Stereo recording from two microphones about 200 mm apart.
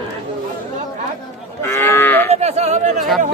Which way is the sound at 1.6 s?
10° left (ahead or behind).